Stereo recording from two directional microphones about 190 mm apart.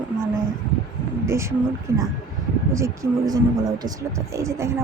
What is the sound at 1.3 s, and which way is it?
Speech, 15° right (ahead or behind).